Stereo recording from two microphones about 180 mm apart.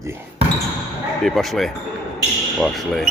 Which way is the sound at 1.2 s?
Centre (ahead or behind).